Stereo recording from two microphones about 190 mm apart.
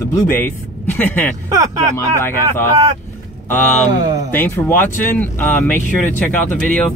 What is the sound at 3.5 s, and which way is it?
Speech, 10° left (ahead or behind).